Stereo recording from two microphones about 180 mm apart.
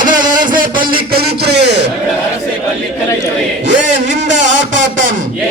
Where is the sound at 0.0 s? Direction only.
45° right (ahead or behind); by 1.9 s 70° right (ahead or behind).